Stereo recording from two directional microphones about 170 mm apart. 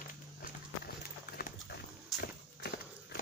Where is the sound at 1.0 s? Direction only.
60° left (ahead or behind).